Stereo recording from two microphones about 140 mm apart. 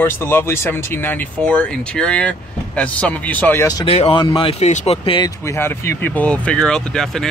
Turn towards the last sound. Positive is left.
turn(degrees=5)  # may be behind; listen again after turning